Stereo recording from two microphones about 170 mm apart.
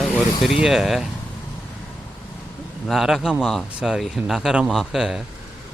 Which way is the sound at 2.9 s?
Centre (ahead or behind).